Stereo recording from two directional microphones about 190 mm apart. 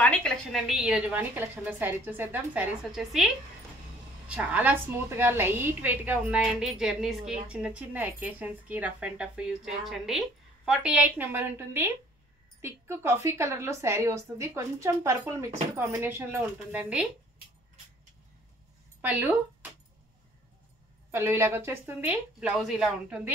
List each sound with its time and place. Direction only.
0.0 s speech: 5° left (ahead or behind)
4.3 s speech: 5° right (ahead or behind)
18.9 s a woman's voice: 10° right (ahead or behind)
21.1 s speech: 15° right (ahead or behind)